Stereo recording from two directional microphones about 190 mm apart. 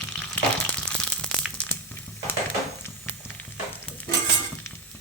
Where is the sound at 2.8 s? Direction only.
10° left (ahead or behind).